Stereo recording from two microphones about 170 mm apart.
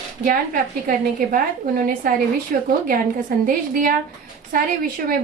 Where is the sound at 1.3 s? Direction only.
55° right (ahead or behind).